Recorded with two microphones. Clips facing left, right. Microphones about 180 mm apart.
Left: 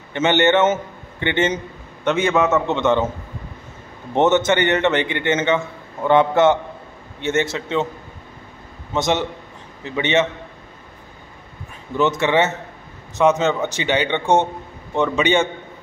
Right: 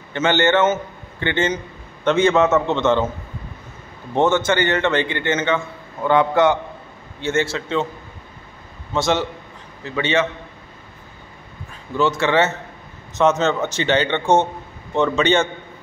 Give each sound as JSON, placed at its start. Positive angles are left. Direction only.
{"t": 0.1, "sound": "a man's voice", "side_deg": 20}
{"t": 4.1, "sound": "a man's voice", "side_deg": 20}
{"t": 8.9, "sound": "a man's voice", "side_deg": 20}
{"t": 12.0, "sound": "a man's voice", "side_deg": 20}